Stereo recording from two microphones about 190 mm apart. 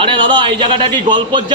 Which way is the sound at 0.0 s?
25° right (ahead or behind).